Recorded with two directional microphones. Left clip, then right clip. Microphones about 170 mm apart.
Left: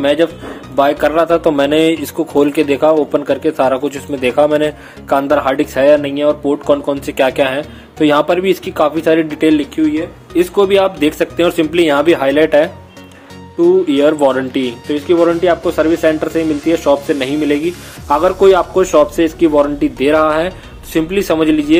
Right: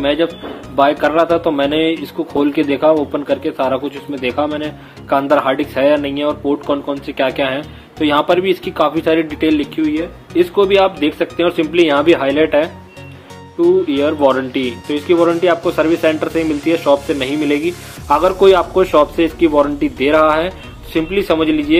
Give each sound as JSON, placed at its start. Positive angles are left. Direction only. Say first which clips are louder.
{"t": 0.0, "sound": "a man's voice", "louder": "left 3 dB", "side_deg": 30}
{"t": 13.8, "sound": "a man's voice", "louder": "left 2 dB", "side_deg": 30}